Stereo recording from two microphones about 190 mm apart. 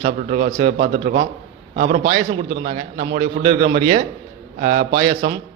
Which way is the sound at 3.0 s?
30° right (ahead or behind).